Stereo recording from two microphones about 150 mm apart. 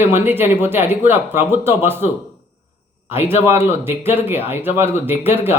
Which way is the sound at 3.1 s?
15° right (ahead or behind).